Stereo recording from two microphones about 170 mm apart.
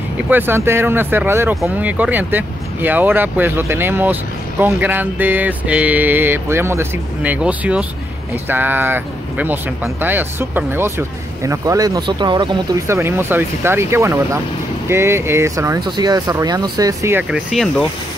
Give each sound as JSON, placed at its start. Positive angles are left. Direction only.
{"t": 0.3, "sound": "speech", "side_deg": -10}